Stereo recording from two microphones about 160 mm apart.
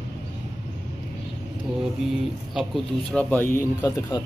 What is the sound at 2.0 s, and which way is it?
Speech, centre (ahead or behind).